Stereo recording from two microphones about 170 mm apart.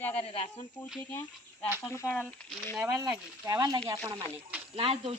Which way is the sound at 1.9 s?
15° left (ahead or behind).